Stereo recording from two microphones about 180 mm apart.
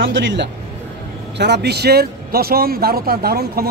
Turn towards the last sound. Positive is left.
turn(degrees=-60)  # may be behind; listen again after turning